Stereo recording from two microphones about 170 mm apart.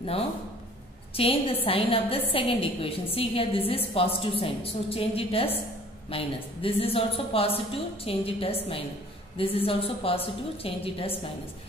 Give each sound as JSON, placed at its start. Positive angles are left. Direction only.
{"t": 1.1, "sound": "a woman's voice", "side_deg": 35}